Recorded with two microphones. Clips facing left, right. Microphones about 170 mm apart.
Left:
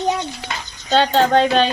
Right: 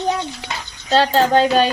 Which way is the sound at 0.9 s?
Centre (ahead or behind).